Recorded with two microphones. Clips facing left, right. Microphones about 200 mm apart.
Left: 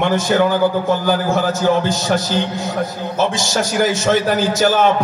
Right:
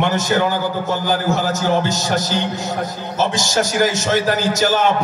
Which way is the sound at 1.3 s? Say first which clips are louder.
Left 2 dB; 55° left (ahead or behind).